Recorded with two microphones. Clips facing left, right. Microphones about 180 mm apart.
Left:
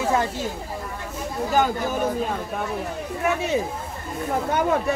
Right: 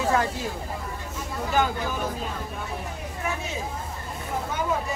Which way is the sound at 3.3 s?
65° left (ahead or behind).